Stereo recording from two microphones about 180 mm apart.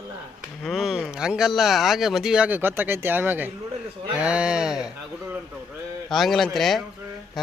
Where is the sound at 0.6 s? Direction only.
Centre (ahead or behind).